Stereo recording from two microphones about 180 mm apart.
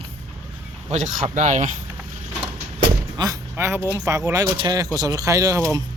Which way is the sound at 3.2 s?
20° right (ahead or behind).